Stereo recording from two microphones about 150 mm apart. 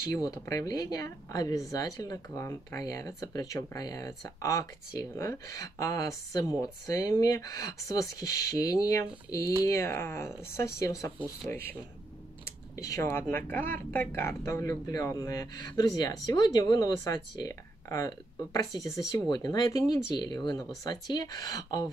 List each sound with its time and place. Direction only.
0.1 s a woman's voice: 25° left (ahead or behind)
12.7 s a woman's voice: 20° left (ahead or behind)